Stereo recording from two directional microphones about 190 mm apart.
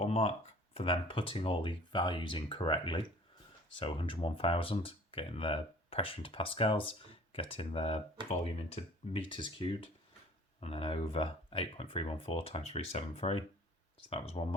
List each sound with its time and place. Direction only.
0.0 s speech: 35° left (ahead or behind)